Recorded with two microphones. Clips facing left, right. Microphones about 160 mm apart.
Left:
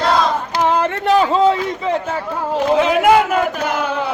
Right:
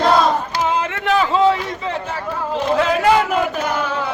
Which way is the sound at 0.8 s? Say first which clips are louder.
Left 4 dB; 40° left (ahead or behind).